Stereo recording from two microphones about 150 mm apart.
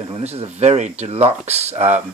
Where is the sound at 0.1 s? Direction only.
45° right (ahead or behind).